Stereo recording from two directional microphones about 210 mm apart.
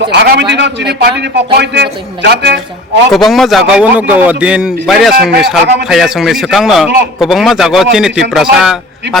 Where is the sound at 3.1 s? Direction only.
Centre (ahead or behind).